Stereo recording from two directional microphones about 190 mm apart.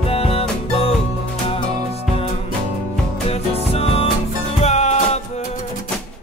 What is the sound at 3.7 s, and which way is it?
Music, 30° left (ahead or behind).